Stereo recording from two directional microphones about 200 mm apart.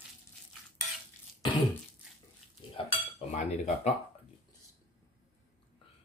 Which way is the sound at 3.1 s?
35° left (ahead or behind).